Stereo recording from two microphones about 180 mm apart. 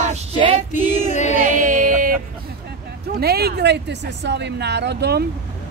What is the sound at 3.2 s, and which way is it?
A woman's voice, 60° right (ahead or behind).